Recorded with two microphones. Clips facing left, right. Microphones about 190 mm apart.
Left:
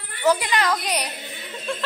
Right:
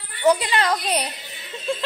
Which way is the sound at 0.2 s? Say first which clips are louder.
Right 2 dB; 20° right (ahead or behind).